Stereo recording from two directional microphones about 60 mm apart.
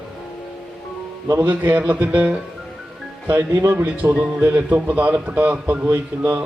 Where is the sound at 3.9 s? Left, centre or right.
Right.